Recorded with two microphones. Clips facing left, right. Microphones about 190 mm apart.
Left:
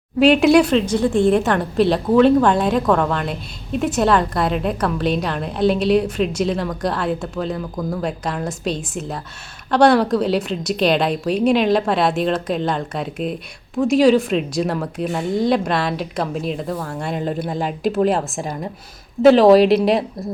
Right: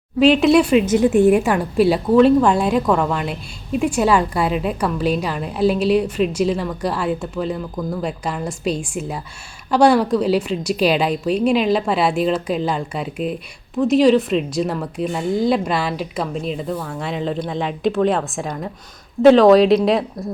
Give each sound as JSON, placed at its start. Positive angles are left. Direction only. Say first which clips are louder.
{"t": 0.2, "sound": "a woman's voice", "louder": "even", "side_deg": 0}
{"t": 0.8, "sound": "a woman's voice", "louder": "right 3 dB", "side_deg": -15}
{"t": 19.2, "sound": "a woman's voice", "louder": "right 1 dB", "side_deg": -15}
{"t": 19.5, "sound": "a woman's voice", "louder": "even", "side_deg": 0}